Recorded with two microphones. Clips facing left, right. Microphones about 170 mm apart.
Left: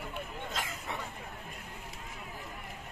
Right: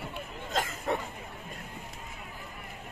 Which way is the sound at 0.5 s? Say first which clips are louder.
Right 8 dB; 45° right (ahead or behind).